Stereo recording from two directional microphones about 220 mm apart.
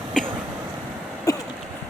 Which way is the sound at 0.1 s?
Centre (ahead or behind).